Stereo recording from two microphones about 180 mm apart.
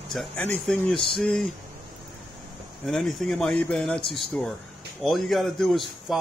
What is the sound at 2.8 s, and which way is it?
Speech, centre (ahead or behind).